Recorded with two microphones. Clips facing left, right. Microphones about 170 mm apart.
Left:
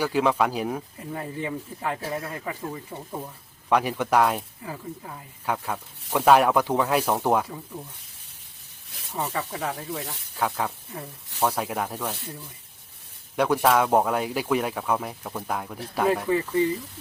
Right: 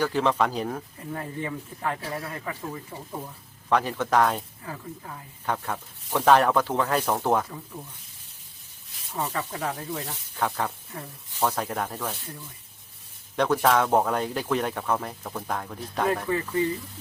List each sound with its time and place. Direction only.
0.0 s speech: 10° left (ahead or behind)
9.1 s speech: 10° left (ahead or behind)
13.3 s speech: 10° left (ahead or behind)